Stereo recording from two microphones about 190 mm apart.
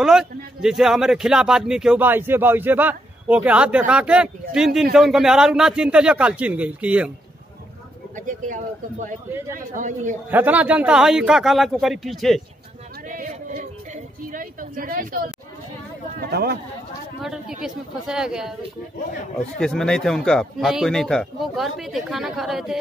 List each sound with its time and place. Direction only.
0.0 s speech: 5° right (ahead or behind)
8.2 s a woman's voice: 45° right (ahead or behind)
10.3 s speech: 10° right (ahead or behind)
13.1 s a sound: 45° right (ahead or behind)
14.3 s a woman's voice: 45° right (ahead or behind)
17.2 s speech: 5° right (ahead or behind)
19.6 s speech: 5° left (ahead or behind)